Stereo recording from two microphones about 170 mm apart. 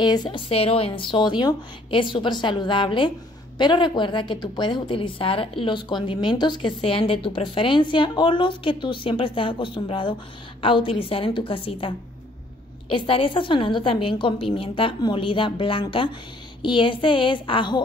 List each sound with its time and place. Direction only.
0.0 s a woman's voice: 25° left (ahead or behind)